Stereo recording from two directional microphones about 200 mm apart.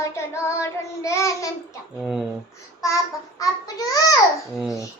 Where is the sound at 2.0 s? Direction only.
Centre (ahead or behind).